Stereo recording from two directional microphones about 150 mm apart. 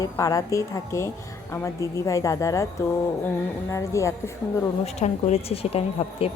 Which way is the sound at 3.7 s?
20° left (ahead or behind).